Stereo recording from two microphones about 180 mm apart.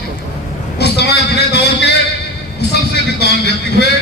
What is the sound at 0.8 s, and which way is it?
Vehicle, 65° left (ahead or behind).